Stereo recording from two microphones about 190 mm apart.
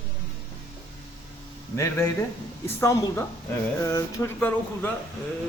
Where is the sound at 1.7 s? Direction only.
15° left (ahead or behind).